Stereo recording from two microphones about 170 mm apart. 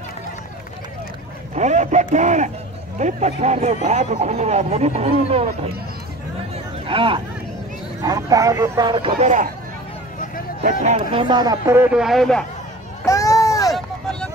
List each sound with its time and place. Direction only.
1.5 s speech: 45° right (ahead or behind)
6.5 s a sound: 30° right (ahead or behind)
8.0 s a man's voice: 20° right (ahead or behind)
10.6 s a man's voice: 40° right (ahead or behind); by 12.4 s centre (ahead or behind)
13.0 s run: 20° left (ahead or behind)
13.7 s vehicle: 5° left (ahead or behind)